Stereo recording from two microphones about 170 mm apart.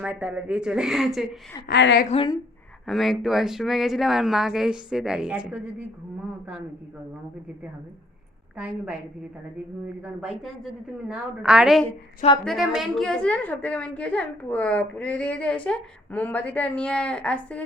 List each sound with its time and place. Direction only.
0.0 s speech: 10° right (ahead or behind)
1.6 s a woman's voice: 80° left
2.0 s speech: 30° left (ahead or behind)
2.8 s speech: centre (ahead or behind)
8.5 s a woman's voice: 5° right (ahead or behind)
10.0 s a woman's voice: 5° right (ahead or behind)